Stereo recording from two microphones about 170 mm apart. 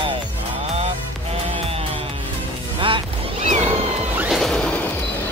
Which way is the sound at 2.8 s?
30° right (ahead or behind).